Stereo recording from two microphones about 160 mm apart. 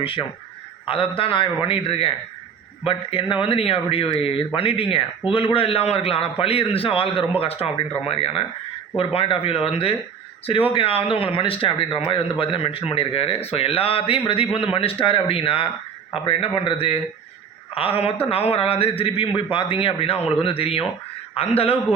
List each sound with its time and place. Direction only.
0.0 s speech: 30° left (ahead or behind)